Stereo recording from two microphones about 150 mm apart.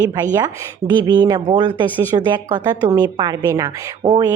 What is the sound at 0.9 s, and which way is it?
Speech, 30° right (ahead or behind).